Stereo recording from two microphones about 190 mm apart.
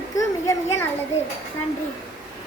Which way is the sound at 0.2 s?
15° left (ahead or behind).